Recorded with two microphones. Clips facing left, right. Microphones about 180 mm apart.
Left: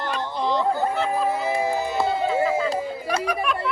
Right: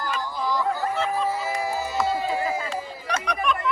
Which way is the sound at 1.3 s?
20° left (ahead or behind).